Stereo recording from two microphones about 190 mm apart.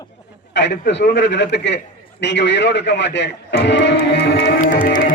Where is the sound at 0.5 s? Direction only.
65° left (ahead or behind).